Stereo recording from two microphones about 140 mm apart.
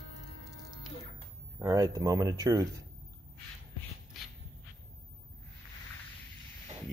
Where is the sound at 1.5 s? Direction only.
25° right (ahead or behind).